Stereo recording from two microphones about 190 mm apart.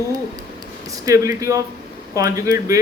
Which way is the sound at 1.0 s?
15° right (ahead or behind).